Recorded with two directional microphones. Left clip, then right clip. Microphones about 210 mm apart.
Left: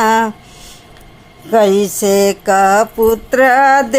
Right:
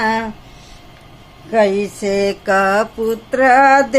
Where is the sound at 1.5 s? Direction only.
25° left (ahead or behind).